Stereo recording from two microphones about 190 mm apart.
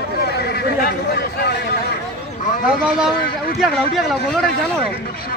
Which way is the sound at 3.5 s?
Centre (ahead or behind).